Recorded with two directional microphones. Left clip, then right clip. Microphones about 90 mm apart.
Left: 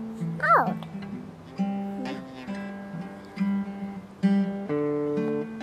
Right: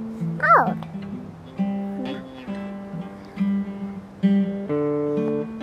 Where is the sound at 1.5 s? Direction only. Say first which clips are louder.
Right 3 dB; 20° left (ahead or behind).